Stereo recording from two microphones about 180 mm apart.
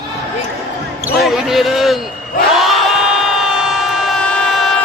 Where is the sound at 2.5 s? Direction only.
Centre (ahead or behind).